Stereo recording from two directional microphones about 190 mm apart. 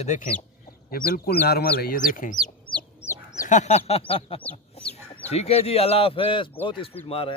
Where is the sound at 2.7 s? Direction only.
15° left (ahead or behind).